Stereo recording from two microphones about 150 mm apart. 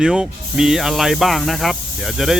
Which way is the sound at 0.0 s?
5° right (ahead or behind).